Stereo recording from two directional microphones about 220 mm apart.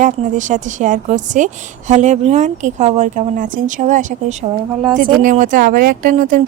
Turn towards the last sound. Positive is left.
turn(degrees=-35)  # may be behind; listen again after turning